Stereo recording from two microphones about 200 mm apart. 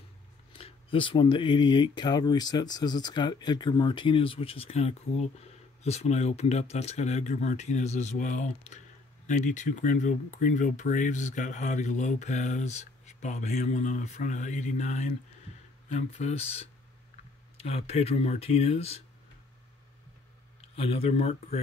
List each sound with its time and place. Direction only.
0.5 s speech: 30° left (ahead or behind)
20.7 s speech: 30° left (ahead or behind)